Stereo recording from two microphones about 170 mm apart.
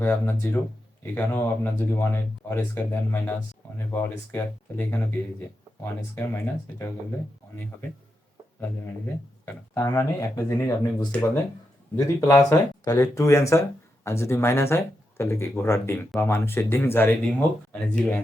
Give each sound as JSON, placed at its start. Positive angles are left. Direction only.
{"t": 0.0, "sound": "speech", "side_deg": 15}
{"t": 9.5, "sound": "speech", "side_deg": 15}